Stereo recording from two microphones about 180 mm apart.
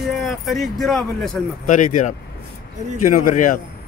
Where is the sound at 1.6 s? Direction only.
45° left (ahead or behind).